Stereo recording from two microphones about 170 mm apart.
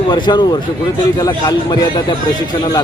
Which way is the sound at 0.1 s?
25° left (ahead or behind).